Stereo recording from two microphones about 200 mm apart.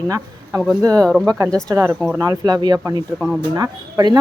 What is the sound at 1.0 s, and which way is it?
Speech, 5° left (ahead or behind).